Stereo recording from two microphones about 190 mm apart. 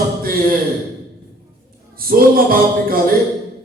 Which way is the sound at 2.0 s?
50° right (ahead or behind).